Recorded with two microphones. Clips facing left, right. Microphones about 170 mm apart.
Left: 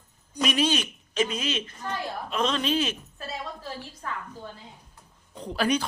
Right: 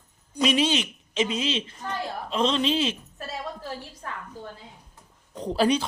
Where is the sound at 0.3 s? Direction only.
25° right (ahead or behind).